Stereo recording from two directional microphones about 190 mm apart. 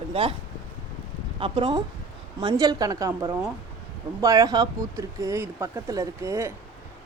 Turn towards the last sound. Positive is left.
turn(degrees=-15)  # may be behind; listen again after turning